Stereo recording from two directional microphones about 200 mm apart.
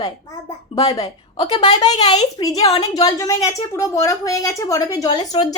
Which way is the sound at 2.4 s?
20° left (ahead or behind).